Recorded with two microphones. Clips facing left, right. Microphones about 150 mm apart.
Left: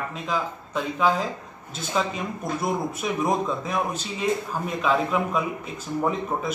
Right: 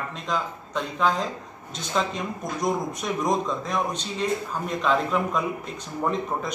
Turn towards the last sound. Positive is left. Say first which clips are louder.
# left 1 dB
turn(degrees=5)  # may be behind; listen again after turning